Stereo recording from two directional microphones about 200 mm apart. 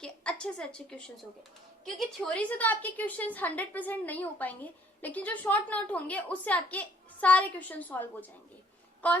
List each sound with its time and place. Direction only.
0.0 s a woman's voice: 5° left (ahead or behind)
9.0 s a woman's voice: 10° left (ahead or behind)